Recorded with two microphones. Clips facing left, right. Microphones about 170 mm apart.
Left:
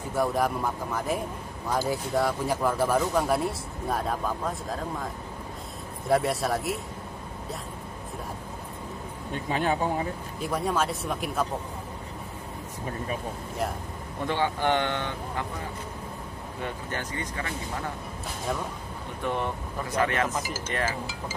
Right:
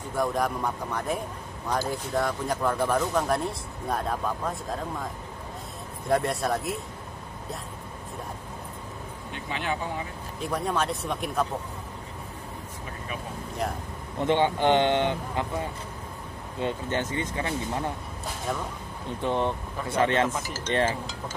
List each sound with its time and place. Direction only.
0.1 s speech: 5° left (ahead or behind)
6.0 s speech: centre (ahead or behind)
9.3 s speech: 40° left (ahead or behind)
10.4 s speech: centre (ahead or behind)
14.2 s speech: 20° right (ahead or behind)
16.6 s speech: 25° right (ahead or behind)
19.2 s speech: 20° right (ahead or behind)
20.4 s speech: 10° left (ahead or behind)